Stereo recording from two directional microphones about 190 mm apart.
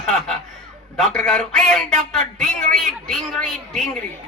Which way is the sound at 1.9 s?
45° right (ahead or behind).